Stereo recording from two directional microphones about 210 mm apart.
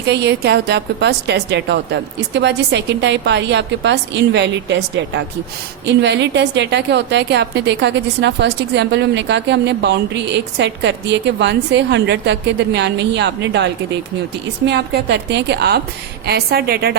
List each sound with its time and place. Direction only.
0.1 s a woman's voice: 55° right (ahead or behind)
14.7 s a woman's voice: 55° right (ahead or behind)